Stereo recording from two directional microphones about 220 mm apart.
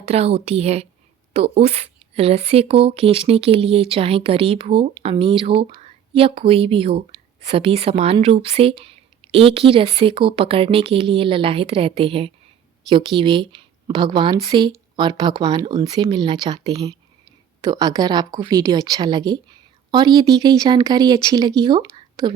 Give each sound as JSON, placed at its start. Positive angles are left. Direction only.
{"t": 0.0, "sound": "a woman's voice", "side_deg": -30}